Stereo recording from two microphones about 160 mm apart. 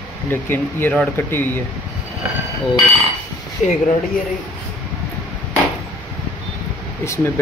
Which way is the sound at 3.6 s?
50° left (ahead or behind).